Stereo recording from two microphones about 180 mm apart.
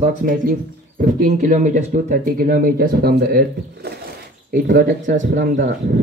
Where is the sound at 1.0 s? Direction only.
50° right (ahead or behind).